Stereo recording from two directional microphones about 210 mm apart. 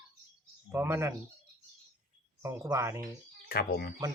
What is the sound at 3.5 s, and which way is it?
Speech, 45° left (ahead or behind).